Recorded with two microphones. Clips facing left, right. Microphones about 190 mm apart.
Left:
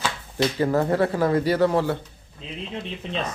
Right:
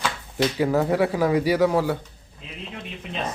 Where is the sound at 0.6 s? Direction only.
10° right (ahead or behind).